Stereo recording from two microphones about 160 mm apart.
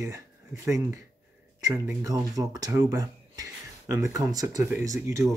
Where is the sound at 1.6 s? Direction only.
20° right (ahead or behind).